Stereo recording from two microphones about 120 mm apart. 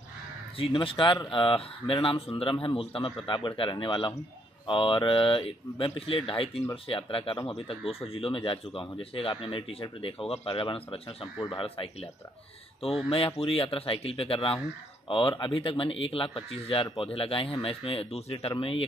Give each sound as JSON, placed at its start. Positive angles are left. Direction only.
{"t": 0.6, "sound": "a man's voice", "side_deg": 45}
{"t": 11.3, "sound": "speech", "side_deg": 35}
{"t": 11.6, "sound": "a man's voice", "side_deg": 50}
{"t": 13.4, "sound": "a man's voice", "side_deg": 50}